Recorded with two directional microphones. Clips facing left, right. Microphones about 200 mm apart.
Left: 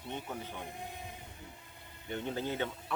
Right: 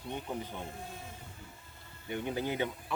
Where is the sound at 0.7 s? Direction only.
15° left (ahead or behind).